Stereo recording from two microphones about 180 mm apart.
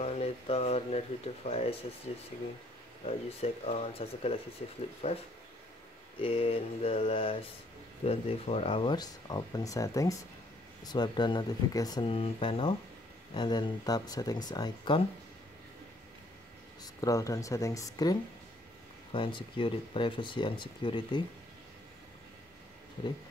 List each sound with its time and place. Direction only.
0.0 s a sound: 35° left (ahead or behind)
1.5 s speech: 35° left (ahead or behind)
6.2 s speech: 30° left (ahead or behind)
16.8 s speech: 20° left (ahead or behind)
19.1 s speech: 30° left (ahead or behind)